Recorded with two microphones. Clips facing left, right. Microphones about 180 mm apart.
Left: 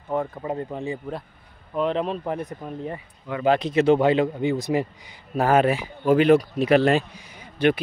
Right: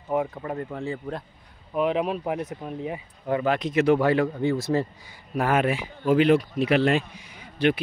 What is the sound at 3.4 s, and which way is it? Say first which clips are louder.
Speech: left 4 dB; 30° left (ahead or behind).